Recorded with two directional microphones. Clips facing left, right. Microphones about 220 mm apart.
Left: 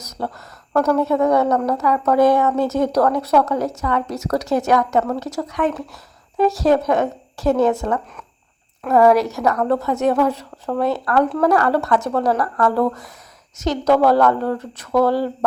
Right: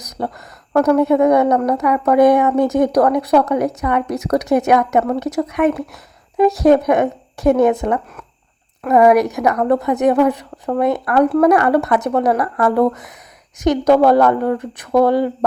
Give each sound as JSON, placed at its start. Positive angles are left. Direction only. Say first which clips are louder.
{"t": 0.0, "sound": "a woman's voice", "louder": "right 3 dB", "side_deg": -15}